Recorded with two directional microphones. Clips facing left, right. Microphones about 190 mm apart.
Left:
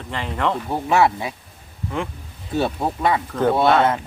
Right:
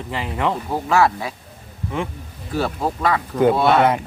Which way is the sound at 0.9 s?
20° left (ahead or behind).